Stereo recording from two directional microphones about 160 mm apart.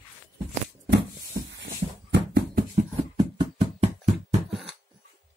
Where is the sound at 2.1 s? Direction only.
90° right.